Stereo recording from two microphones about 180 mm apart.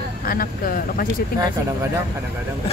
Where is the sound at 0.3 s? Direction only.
50° left (ahead or behind).